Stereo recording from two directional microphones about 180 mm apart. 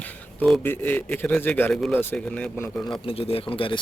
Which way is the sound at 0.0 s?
5° left (ahead or behind).